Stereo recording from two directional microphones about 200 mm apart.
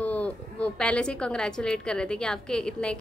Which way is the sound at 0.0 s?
5° left (ahead or behind).